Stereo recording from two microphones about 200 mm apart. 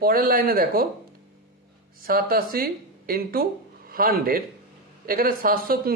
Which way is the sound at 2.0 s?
45° right (ahead or behind).